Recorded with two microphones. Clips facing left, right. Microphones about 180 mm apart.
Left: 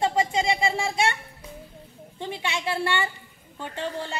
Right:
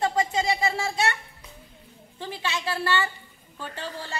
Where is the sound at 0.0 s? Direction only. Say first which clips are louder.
Left 1 dB; 25° left (ahead or behind).